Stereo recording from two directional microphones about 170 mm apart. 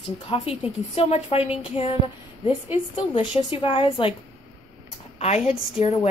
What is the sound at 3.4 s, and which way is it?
Speech, 30° left (ahead or behind).